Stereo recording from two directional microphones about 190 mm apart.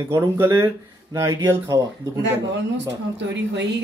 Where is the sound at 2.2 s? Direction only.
65° right (ahead or behind).